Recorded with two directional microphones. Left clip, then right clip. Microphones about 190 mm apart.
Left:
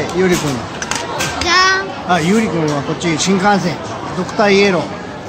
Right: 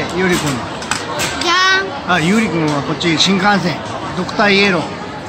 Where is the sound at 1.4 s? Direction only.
40° right (ahead or behind).